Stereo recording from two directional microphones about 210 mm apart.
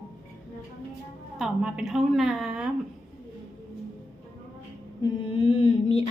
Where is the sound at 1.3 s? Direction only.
5° right (ahead or behind).